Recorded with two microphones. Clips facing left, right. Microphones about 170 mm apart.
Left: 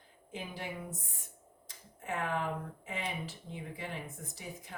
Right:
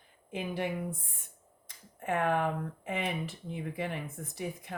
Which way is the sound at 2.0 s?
60° right (ahead or behind).